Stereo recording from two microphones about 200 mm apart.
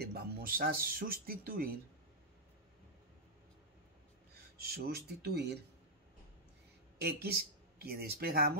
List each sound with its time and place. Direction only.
0.0 s speech: 50° right (ahead or behind)
4.6 s speech: 50° right (ahead or behind)
7.0 s speech: 50° right (ahead or behind)